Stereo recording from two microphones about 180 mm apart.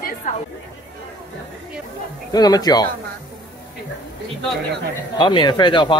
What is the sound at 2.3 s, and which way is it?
Speech, 20° left (ahead or behind).